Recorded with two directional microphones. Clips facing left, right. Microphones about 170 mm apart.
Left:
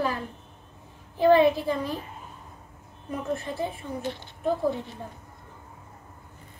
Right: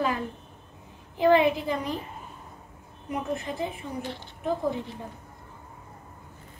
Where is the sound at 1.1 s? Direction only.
20° right (ahead or behind).